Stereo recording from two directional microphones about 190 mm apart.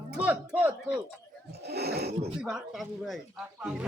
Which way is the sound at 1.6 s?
60° right (ahead or behind).